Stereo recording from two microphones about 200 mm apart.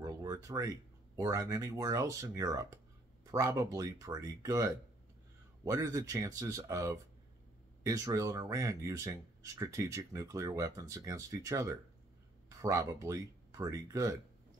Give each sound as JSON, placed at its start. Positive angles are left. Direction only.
{"t": 0.0, "sound": "speech", "side_deg": -15}
{"t": 5.7, "sound": "speech", "side_deg": -15}